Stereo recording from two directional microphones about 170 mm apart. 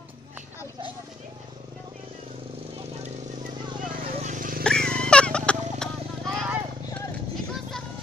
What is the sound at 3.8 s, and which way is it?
Vehicle, 55° right (ahead or behind).